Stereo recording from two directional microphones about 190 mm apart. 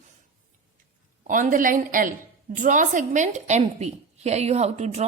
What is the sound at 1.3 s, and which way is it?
A woman's voice, 45° right (ahead or behind).